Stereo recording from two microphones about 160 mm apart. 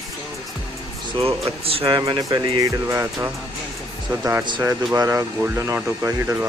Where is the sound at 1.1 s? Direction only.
35° right (ahead or behind).